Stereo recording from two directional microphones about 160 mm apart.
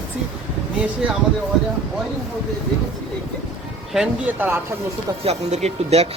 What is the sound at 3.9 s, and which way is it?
Speech, 5° right (ahead or behind).